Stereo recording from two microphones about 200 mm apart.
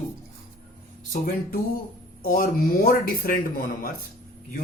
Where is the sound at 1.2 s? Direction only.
45° left (ahead or behind).